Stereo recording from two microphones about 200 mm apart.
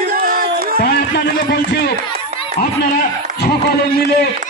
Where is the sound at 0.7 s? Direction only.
55° left (ahead or behind).